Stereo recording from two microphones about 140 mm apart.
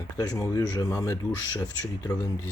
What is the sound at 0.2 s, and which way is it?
Speech, 25° left (ahead or behind).